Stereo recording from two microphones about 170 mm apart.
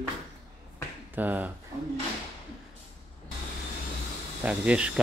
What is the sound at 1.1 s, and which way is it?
Speech, 10° right (ahead or behind).